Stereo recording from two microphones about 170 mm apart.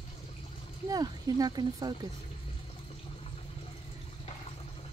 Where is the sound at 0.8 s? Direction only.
20° right (ahead or behind).